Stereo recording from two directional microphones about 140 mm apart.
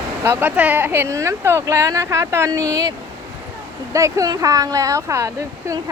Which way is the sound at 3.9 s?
25° right (ahead or behind).